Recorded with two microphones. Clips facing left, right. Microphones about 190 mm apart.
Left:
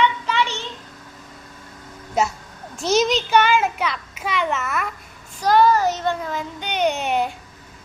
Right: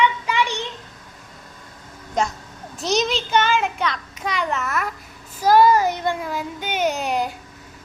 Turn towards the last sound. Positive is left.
turn(degrees=0)  # may be behind; listen again after turning